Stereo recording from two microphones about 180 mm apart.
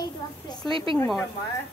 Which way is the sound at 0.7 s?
30° right (ahead or behind).